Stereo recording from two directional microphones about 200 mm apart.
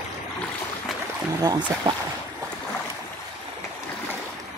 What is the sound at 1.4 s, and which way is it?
Speech, 20° right (ahead or behind).